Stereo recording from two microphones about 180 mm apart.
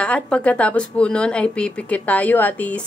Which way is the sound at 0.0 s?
5° left (ahead or behind).